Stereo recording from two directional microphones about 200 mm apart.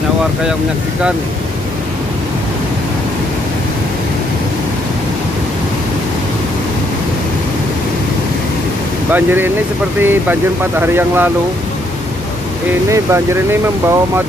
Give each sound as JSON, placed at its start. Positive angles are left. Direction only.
{"t": 9.1, "sound": "speech", "side_deg": -10}
{"t": 12.9, "sound": "speech", "side_deg": -15}